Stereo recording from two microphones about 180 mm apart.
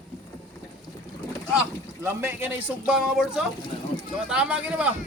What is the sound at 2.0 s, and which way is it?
Speech, 10° right (ahead or behind).